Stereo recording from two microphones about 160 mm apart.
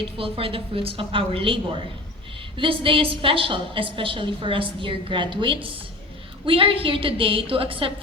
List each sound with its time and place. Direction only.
0.2 s a woman's voice: 35° right (ahead or behind)